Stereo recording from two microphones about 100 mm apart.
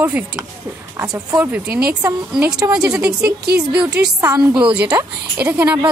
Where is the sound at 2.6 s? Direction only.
40° right (ahead or behind).